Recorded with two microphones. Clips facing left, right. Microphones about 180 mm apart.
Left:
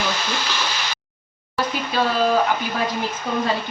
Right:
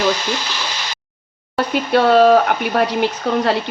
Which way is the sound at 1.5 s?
65° right (ahead or behind).